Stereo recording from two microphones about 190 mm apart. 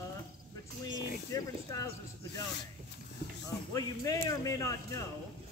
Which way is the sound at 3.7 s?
20° left (ahead or behind).